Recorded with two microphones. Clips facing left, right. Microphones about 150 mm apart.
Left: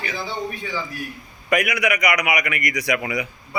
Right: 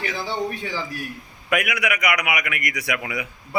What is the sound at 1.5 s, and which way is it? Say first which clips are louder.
A man's voice: left 3 dB; centre (ahead or behind).